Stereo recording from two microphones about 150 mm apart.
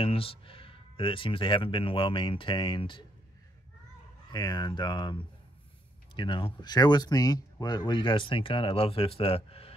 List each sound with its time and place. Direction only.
0.0 s speech: 40° left (ahead or behind)
4.3 s speech: 25° left (ahead or behind)